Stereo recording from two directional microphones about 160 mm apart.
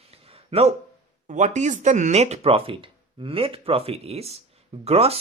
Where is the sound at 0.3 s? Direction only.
35° right (ahead or behind).